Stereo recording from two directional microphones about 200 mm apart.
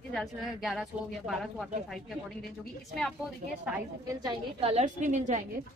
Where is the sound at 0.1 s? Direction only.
Centre (ahead or behind).